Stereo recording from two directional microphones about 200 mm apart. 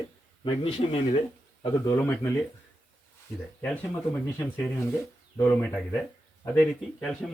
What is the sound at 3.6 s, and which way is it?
Speech, 10° left (ahead or behind).